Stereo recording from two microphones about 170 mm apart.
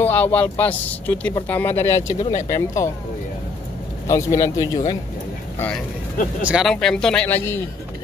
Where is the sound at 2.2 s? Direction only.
40° left (ahead or behind).